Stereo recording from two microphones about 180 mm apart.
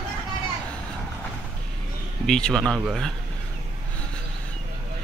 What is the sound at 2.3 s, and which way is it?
Speech, 5° left (ahead or behind).